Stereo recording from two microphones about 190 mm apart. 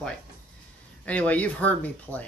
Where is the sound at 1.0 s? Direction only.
5° left (ahead or behind).